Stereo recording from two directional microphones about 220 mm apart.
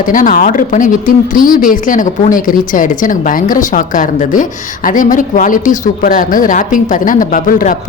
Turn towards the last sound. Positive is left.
turn(degrees=40)  # may be behind; listen again after turning